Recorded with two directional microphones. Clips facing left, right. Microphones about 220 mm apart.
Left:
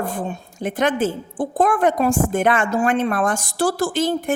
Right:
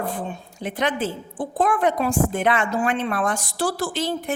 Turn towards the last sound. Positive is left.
turn(degrees=50)  # may be behind; listen again after turning